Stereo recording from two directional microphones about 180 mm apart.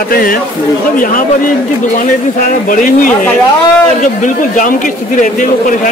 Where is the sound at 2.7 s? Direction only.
45° left (ahead or behind).